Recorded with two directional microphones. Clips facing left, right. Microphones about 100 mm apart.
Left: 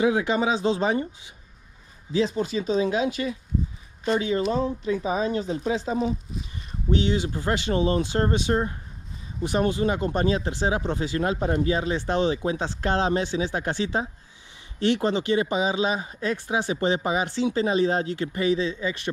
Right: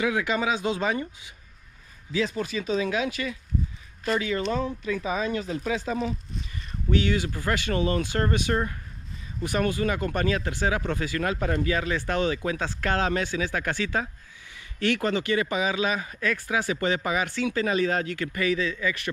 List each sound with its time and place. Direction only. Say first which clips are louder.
0.0 s speech: left 3 dB; 25° left (ahead or behind)
4.5 s speech: left 3 dB; 25° left (ahead or behind)